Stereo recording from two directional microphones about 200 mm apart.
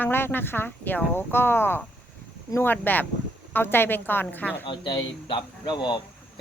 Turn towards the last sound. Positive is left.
turn(degrees=20)  # may be behind; listen again after turning